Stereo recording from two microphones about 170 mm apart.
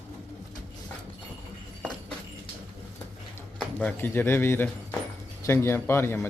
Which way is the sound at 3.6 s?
5° left (ahead or behind).